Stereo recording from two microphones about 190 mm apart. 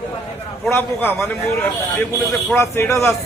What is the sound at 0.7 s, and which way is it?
A man's voice, 10° left (ahead or behind).